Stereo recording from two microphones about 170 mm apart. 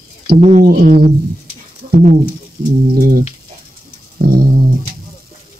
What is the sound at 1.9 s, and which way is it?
Speech, 45° right (ahead or behind).